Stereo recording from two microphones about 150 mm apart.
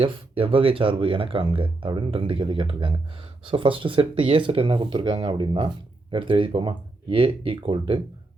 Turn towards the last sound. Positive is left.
turn(degrees=-35)  # may be behind; listen again after turning